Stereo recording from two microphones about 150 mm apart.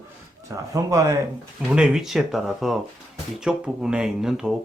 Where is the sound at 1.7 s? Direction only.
5° right (ahead or behind).